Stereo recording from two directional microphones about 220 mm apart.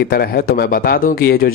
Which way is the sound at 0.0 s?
45° left (ahead or behind).